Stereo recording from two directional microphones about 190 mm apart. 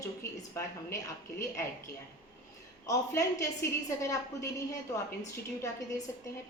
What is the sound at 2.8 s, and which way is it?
A woman's voice, 15° left (ahead or behind).